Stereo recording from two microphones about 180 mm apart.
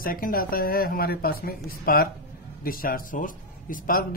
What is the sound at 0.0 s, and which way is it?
Speech, 50° left (ahead or behind).